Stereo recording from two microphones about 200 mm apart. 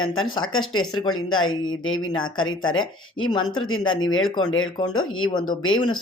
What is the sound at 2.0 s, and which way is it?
Speech, 20° left (ahead or behind).